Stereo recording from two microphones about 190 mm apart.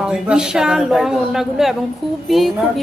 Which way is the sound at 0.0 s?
5° right (ahead or behind).